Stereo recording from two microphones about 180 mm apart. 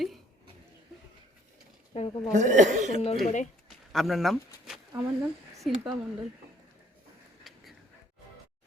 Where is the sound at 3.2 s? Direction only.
45° left (ahead or behind).